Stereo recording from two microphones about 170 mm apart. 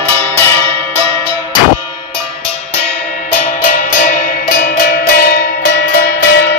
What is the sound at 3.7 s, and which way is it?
Music, 50° left (ahead or behind).